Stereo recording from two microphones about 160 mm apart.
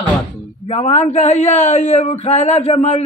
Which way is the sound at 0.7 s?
45° left (ahead or behind).